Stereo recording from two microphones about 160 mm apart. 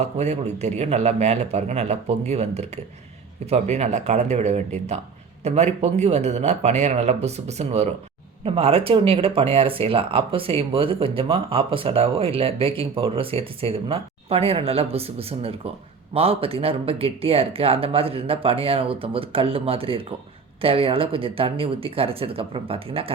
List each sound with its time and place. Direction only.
0.0 s a man's voice: 45° right (ahead or behind)